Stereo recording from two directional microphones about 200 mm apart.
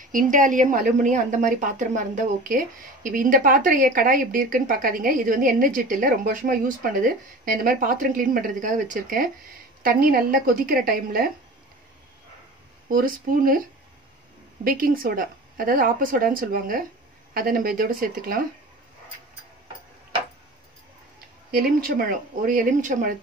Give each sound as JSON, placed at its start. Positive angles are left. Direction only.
{"t": 0.0, "sound": "a woman's voice", "side_deg": -40}
{"t": 12.8, "sound": "a woman's voice", "side_deg": -45}
{"t": 14.6, "sound": "a woman's voice", "side_deg": -45}
{"t": 21.5, "sound": "a woman's voice", "side_deg": -45}